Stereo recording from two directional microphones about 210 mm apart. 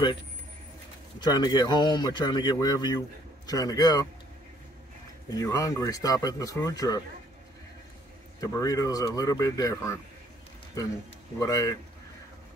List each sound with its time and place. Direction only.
1.2 s a man's voice: 20° left (ahead or behind)
5.3 s speech: 15° left (ahead or behind)
8.4 s speech: 15° left (ahead or behind)
11.3 s speech: 15° left (ahead or behind)